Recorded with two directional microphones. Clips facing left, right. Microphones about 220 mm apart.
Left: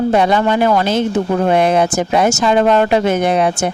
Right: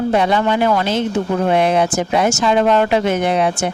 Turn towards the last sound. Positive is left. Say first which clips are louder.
# left 2 dB
turn(degrees=45)  # may be behind; listen again after turning